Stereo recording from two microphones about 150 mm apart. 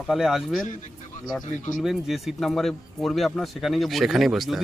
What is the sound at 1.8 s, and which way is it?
Speech, centre (ahead or behind).